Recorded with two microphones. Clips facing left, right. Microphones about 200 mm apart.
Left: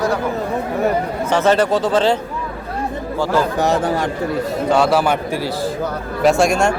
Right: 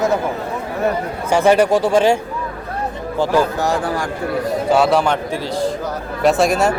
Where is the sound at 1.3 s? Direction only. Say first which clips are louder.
Right 2 dB; 10° right (ahead or behind).